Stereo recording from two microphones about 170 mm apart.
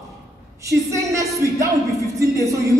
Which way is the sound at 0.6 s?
20° right (ahead or behind).